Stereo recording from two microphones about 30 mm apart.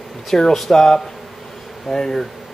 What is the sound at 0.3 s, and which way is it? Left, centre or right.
Speech, centre.